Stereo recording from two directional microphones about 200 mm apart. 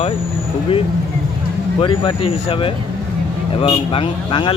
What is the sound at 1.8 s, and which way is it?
Speech, 25° left (ahead or behind).